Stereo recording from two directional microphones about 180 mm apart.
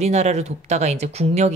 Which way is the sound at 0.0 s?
40° right (ahead or behind).